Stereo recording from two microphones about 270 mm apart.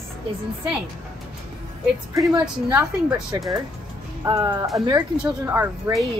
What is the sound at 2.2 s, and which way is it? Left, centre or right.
Speech, centre.